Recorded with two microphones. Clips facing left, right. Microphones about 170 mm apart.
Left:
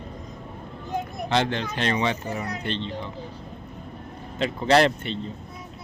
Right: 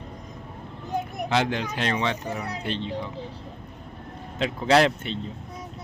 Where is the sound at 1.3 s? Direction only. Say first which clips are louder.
Left 1 dB; 5° right (ahead or behind).